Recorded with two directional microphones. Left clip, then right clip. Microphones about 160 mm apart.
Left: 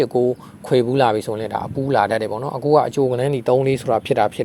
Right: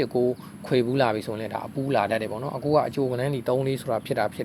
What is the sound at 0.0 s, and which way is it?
Speech, 40° left (ahead or behind).